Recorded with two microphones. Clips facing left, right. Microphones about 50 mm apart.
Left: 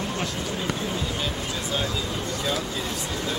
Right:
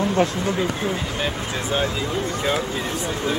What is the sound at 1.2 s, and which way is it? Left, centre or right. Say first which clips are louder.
Speech: right 4 dB; right.